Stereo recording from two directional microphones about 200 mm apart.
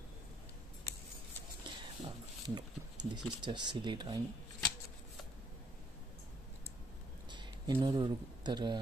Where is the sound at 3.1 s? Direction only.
20° right (ahead or behind).